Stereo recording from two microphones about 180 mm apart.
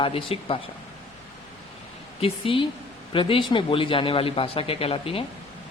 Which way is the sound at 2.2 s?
30° left (ahead or behind).